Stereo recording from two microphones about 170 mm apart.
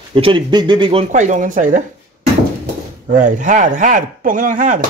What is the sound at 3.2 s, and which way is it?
Speech, 50° right (ahead or behind).